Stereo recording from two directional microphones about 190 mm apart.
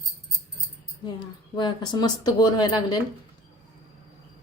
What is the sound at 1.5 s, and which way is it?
Speech, 25° left (ahead or behind).